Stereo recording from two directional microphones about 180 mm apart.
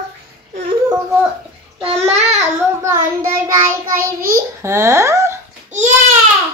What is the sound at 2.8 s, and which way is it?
Child singing, 15° right (ahead or behind).